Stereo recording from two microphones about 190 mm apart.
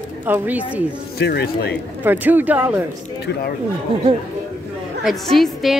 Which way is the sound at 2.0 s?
10° right (ahead or behind).